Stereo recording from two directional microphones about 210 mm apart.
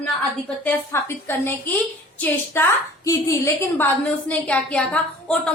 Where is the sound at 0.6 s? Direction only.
10° left (ahead or behind).